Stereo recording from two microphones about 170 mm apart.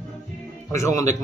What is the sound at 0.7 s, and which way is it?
Speech, 15° left (ahead or behind).